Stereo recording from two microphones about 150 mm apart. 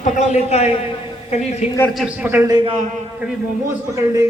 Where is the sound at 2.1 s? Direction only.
10° right (ahead or behind).